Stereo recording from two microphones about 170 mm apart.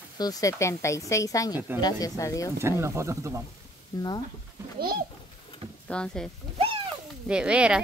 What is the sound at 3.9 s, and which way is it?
Speech, 20° left (ahead or behind).